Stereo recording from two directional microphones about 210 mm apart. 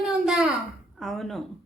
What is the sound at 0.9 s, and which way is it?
Speech, centre (ahead or behind).